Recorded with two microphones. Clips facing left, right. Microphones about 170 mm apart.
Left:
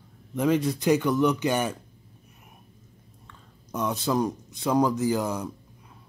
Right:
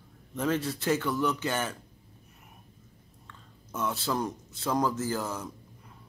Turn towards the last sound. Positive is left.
turn(degrees=15)  # may be behind; listen again after turning